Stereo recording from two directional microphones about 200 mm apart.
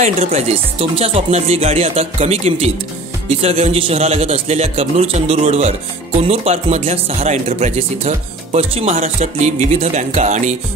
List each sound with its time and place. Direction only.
0.0 s a man's voice: 35° right (ahead or behind)